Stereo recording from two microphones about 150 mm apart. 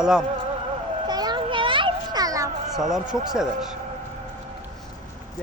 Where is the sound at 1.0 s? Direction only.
25° right (ahead or behind).